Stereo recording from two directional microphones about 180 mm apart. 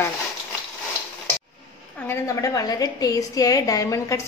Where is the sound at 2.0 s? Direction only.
20° left (ahead or behind).